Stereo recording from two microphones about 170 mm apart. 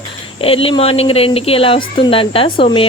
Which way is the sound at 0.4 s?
35° left (ahead or behind).